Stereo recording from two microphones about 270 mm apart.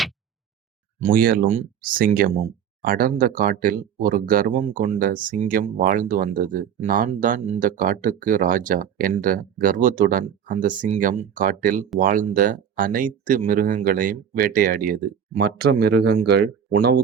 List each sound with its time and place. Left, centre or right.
0.9 s speech: right